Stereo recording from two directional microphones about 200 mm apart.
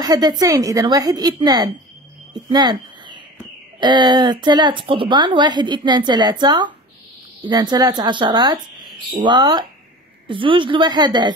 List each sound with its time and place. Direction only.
0.0 s a woman's voice: 20° right (ahead or behind)
2.3 s a sound: 20° right (ahead or behind)
3.8 s a woman's voice: 20° right (ahead or behind)